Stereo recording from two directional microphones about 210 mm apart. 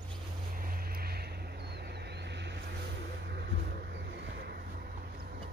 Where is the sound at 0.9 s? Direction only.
45° right (ahead or behind).